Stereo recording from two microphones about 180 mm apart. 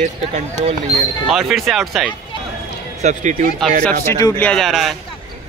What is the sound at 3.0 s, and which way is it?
Speech, 40° right (ahead or behind).